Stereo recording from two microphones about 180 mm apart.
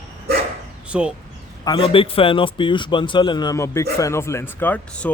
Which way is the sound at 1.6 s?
25° left (ahead or behind).